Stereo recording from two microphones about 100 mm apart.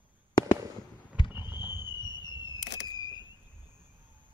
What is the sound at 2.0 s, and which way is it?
Fireworks, 45° left (ahead or behind).